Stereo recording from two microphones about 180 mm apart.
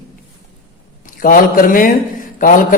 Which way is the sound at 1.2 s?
50° left (ahead or behind).